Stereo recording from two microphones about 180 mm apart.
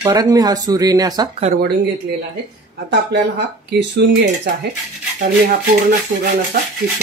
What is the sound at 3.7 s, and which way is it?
Speech, 65° right (ahead or behind).